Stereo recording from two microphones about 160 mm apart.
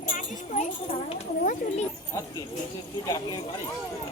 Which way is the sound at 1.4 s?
55° left (ahead or behind).